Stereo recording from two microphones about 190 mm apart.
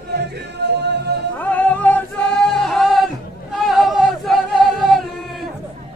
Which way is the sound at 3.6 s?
Centre (ahead or behind).